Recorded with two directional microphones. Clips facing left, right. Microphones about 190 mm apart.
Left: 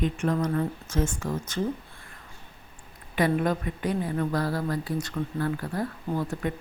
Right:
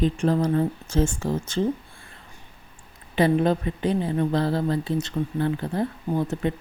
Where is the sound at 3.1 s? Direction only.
25° right (ahead or behind).